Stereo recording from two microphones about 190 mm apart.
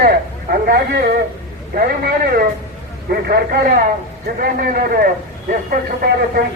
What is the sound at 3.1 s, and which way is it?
A man's voice, 55° right (ahead or behind).